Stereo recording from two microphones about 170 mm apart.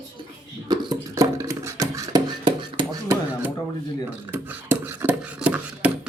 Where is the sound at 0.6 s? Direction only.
25° right (ahead or behind).